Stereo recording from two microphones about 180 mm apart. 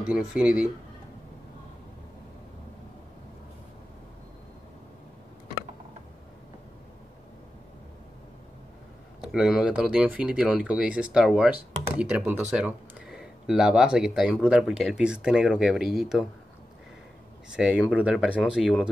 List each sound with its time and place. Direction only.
0.0 s speech: 5° right (ahead or behind)
9.2 s speech: 5° right (ahead or behind)
17.5 s speech: 5° right (ahead or behind)